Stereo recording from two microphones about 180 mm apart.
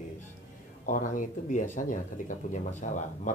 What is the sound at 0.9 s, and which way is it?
Speech, 45° left (ahead or behind).